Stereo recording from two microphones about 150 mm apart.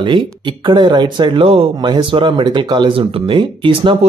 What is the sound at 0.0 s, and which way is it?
Speech, 35° right (ahead or behind).